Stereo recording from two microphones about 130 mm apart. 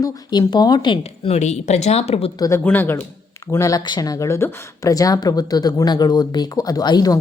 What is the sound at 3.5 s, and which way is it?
Speech, 25° left (ahead or behind).